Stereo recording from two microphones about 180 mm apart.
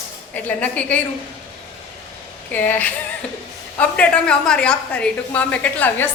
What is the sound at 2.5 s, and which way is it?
A woman's voice, 10° left (ahead or behind).